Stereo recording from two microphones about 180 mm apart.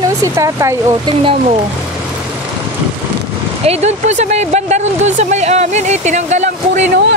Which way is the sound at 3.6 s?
35° right (ahead or behind).